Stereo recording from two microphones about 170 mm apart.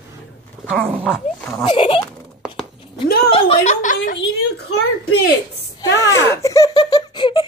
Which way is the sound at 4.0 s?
80° left.